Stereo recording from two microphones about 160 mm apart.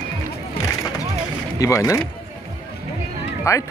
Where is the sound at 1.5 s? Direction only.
20° left (ahead or behind).